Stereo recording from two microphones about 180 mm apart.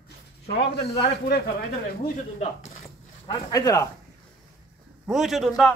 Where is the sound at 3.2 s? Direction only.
20° left (ahead or behind).